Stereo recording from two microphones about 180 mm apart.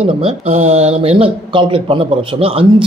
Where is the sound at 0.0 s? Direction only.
30° right (ahead or behind).